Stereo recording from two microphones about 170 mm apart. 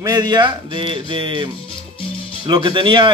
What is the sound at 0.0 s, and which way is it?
Speech, 20° right (ahead or behind).